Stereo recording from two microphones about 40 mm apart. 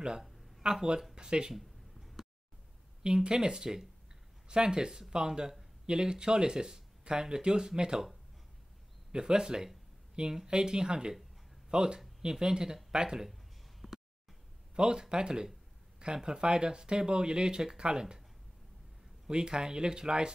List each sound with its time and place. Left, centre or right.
0.6 s speech: centre
1.5 s a sound: centre
3.3 s speech: centre
9.1 s speech: centre
13.3 s a sound: centre
14.8 s speech: centre
19.2 s speech: right